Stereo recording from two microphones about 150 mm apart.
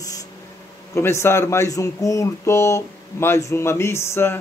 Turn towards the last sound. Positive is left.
turn(degrees=15)  # may be behind; listen again after turning